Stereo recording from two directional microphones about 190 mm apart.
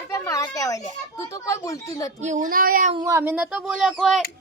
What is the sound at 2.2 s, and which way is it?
Speech, 40° right (ahead or behind).